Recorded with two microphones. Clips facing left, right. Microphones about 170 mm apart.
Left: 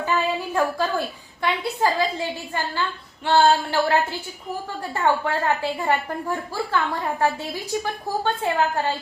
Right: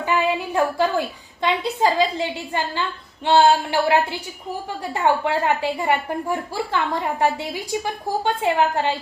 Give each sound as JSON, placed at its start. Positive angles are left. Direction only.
{"t": 0.0, "sound": "a woman's voice", "side_deg": -15}